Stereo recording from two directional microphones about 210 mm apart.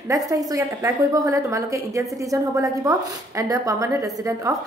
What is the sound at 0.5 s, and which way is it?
A woman's voice, 15° right (ahead or behind).